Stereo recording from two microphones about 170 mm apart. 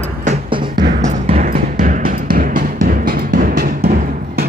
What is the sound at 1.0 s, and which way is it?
Music, 40° right (ahead or behind).